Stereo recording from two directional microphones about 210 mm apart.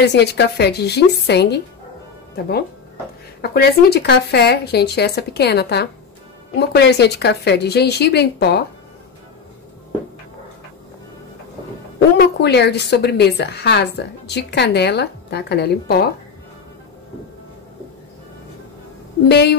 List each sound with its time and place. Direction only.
0.0 s a woman's voice: 50° left (ahead or behind)
3.4 s a woman's voice: 50° left (ahead or behind)
12.2 s a woman's voice: 50° left (ahead or behind)
19.2 s a woman's voice: 50° left (ahead or behind)